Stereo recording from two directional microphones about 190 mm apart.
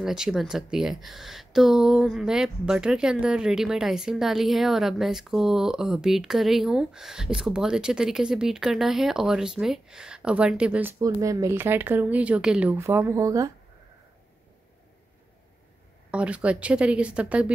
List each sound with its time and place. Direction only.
0.0 s speech: 5° right (ahead or behind)
16.1 s speech: 5° right (ahead or behind)